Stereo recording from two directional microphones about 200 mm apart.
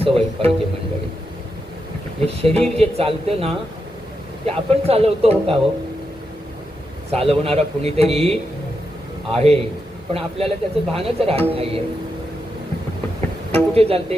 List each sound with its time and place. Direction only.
0.0 s speech: 30° right (ahead or behind)
2.2 s speech: 30° right (ahead or behind)
7.1 s a man's voice: 30° right (ahead or behind)
13.5 s speech: 30° right (ahead or behind)